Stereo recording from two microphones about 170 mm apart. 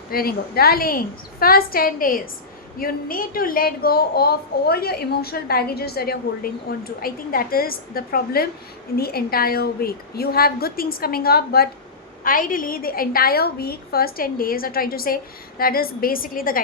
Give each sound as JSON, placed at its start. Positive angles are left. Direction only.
{"t": 0.1, "sound": "a woman's voice", "side_deg": 60}
{"t": 12.2, "sound": "a woman's voice", "side_deg": 55}